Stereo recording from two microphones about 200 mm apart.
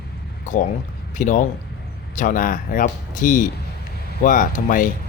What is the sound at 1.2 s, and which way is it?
Speech, 40° left (ahead or behind).